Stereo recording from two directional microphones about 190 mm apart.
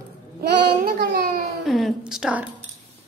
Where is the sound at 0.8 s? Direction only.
55° right (ahead or behind).